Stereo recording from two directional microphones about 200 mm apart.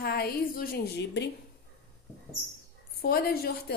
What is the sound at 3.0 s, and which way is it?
Speech, 50° left (ahead or behind).